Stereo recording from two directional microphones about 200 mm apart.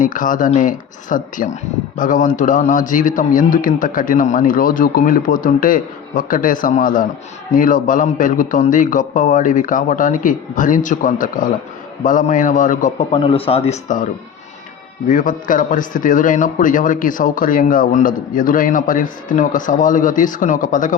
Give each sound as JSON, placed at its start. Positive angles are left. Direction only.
{"t": 0.0, "sound": "a man's voice", "side_deg": 40}